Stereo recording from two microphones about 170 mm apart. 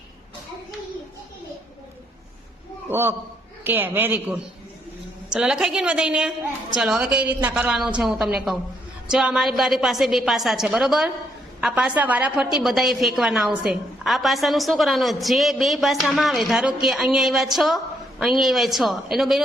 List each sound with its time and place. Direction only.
2.9 s a woman's voice: 15° right (ahead or behind)